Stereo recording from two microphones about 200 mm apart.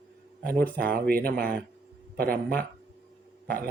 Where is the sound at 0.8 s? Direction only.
45° right (ahead or behind).